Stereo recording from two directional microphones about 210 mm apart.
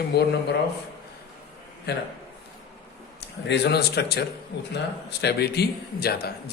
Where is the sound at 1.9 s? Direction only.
50° left (ahead or behind).